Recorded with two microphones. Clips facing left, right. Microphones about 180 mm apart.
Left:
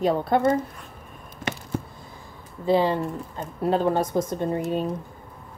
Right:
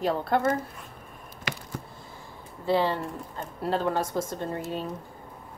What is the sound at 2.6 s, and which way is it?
Speech, 15° left (ahead or behind).